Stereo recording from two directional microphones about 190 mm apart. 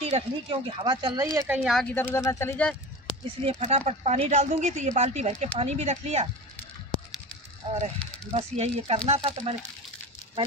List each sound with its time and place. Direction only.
0.0 s speech: 30° right (ahead or behind)
1.5 s speech: centre (ahead or behind)
2.0 s speech: 10° left (ahead or behind)
3.4 s a woman's voice: 35° right (ahead or behind)
7.6 s a woman's voice: 35° right (ahead or behind)